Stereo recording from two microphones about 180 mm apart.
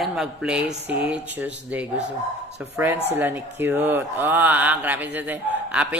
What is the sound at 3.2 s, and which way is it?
Speech, 10° right (ahead or behind).